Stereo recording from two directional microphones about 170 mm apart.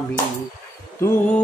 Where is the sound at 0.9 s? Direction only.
15° left (ahead or behind).